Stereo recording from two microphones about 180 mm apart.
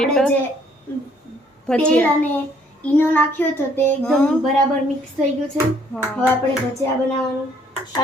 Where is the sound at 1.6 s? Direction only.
5° left (ahead or behind).